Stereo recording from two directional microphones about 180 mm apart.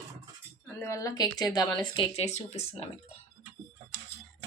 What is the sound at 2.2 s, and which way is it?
Speech, 40° left (ahead or behind).